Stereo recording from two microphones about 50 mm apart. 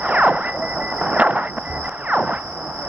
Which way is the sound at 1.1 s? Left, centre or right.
Right.